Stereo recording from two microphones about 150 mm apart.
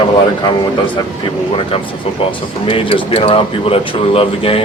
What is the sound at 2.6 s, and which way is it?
Speech, 35° left (ahead or behind).